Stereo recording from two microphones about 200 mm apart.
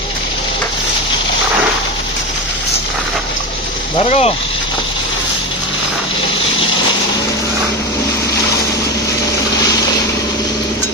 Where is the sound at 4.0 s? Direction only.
30° left (ahead or behind).